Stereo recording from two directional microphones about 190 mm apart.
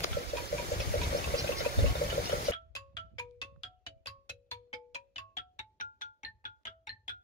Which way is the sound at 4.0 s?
35° left (ahead or behind).